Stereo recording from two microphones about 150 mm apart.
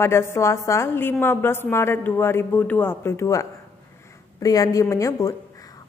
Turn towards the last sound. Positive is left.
turn(degrees=20)  # may be behind; listen again after turning